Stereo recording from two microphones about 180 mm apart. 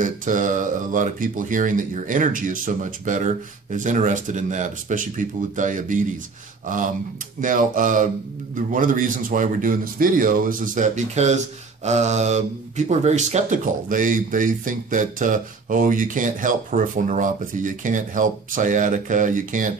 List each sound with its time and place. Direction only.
0.0 s a man's voice: 45° right (ahead or behind)
7.3 s a man's voice: 50° right (ahead or behind)